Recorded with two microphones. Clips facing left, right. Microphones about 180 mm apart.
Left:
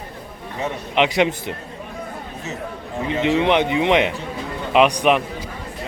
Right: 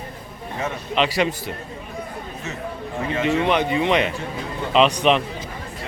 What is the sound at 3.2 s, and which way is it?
A man's voice, 20° left (ahead or behind).